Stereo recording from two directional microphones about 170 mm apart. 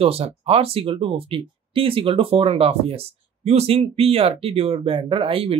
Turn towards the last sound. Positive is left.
turn(degrees=-30)  # may be behind; listen again after turning